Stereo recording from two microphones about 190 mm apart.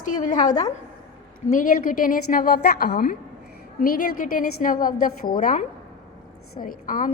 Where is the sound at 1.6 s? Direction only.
45° left (ahead or behind).